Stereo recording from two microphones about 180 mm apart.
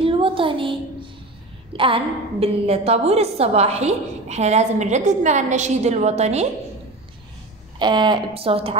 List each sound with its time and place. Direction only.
0.0 s a sound: 30° right (ahead or behind)
2.4 s a woman's voice: 35° right (ahead or behind)
7.8 s a woman's voice: 25° right (ahead or behind)